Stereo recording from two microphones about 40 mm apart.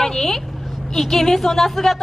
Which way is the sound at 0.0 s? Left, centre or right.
Centre.